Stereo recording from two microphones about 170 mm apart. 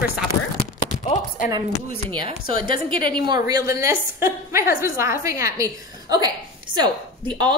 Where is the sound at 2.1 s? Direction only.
30° right (ahead or behind).